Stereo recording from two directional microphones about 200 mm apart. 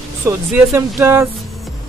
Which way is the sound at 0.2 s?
10° right (ahead or behind).